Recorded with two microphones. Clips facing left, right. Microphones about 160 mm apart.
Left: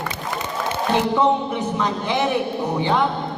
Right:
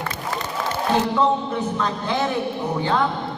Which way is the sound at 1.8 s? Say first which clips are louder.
Left 3 dB; 15° left (ahead or behind).